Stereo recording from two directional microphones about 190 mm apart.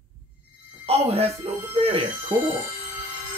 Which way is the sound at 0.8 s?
30° right (ahead or behind).